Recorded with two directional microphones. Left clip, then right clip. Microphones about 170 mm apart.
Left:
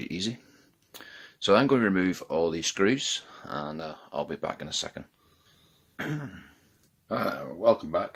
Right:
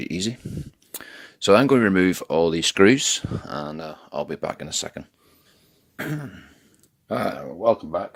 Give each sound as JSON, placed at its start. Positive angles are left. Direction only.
{"t": 0.0, "sound": "a sound", "side_deg": -35}
{"t": 0.9, "sound": "speech", "side_deg": -40}
{"t": 7.6, "sound": "speech", "side_deg": -25}